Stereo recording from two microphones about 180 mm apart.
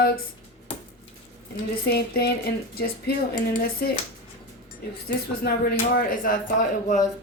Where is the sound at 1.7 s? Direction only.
60° left (ahead or behind).